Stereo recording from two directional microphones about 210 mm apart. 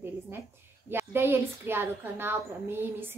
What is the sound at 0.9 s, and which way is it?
A woman's voice, 10° right (ahead or behind).